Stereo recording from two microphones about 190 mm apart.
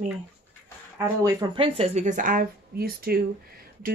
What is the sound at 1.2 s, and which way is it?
Speech, 20° right (ahead or behind).